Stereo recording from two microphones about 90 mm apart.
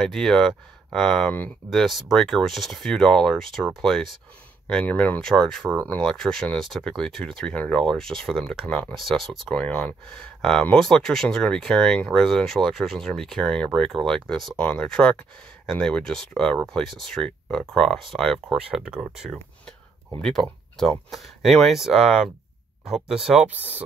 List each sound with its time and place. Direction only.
0.0 s speech: 5° left (ahead or behind)
4.8 s speech: 20° left (ahead or behind)
5.2 s speech: 5° left (ahead or behind)
8.6 s speech: 15° left (ahead or behind)
8.9 s speech: centre (ahead or behind)
9.5 s speech: 15° left (ahead or behind)
18.5 s speech: 10° right (ahead or behind)
20.2 s speech: 5° left (ahead or behind); by 23.8 s 15° right (ahead or behind)